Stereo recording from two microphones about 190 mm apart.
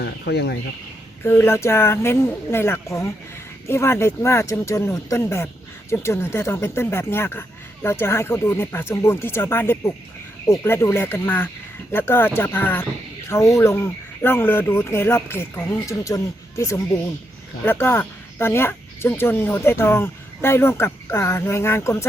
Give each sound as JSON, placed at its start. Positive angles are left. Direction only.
{"t": 0.0, "sound": "speech", "side_deg": 60}
{"t": 1.2, "sound": "speech", "side_deg": 15}